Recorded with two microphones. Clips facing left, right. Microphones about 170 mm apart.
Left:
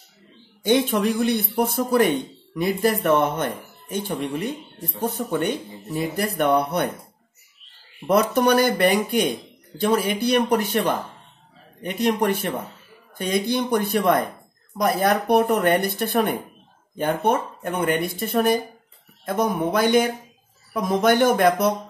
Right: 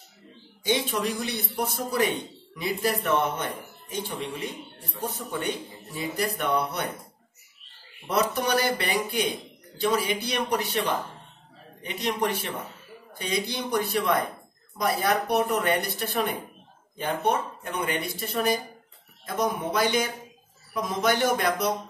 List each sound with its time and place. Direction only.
0.7 s speech: 55° left (ahead or behind)
8.1 s speech: 55° left (ahead or behind)